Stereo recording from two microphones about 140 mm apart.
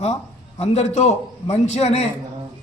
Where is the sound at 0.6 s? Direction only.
55° left (ahead or behind).